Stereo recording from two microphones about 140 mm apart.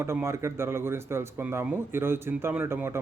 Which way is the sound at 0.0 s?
20° right (ahead or behind).